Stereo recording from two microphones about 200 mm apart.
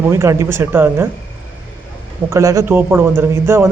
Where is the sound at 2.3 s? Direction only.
15° right (ahead or behind).